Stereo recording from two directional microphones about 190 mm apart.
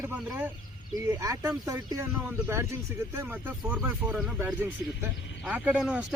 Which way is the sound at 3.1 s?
15° right (ahead or behind).